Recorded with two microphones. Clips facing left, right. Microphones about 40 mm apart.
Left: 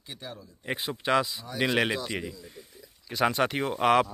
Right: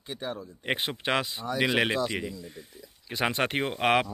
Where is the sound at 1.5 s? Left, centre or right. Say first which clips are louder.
Right 1 dB; centre.